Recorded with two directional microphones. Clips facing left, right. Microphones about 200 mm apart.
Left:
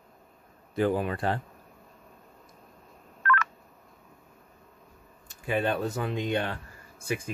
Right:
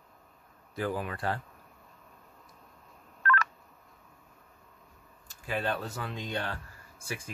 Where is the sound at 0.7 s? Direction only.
25° left (ahead or behind).